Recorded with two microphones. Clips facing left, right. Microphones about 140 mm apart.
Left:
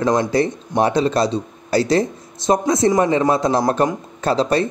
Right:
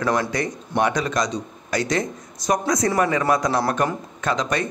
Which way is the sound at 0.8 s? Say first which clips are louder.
Left 5 dB; 30° left (ahead or behind).